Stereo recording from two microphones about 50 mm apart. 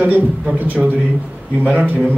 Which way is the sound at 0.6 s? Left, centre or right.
Right.